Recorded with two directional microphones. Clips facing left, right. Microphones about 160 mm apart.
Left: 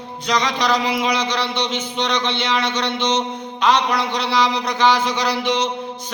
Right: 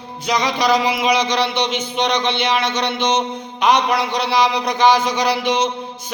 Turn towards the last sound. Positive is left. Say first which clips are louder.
# right 2 dB
turn(degrees=-10)  # may be behind; listen again after turning